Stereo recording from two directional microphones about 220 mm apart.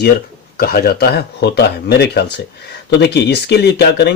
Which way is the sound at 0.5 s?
45° left (ahead or behind).